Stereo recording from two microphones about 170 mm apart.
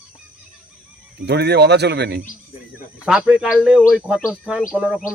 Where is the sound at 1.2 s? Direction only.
75° right (ahead or behind).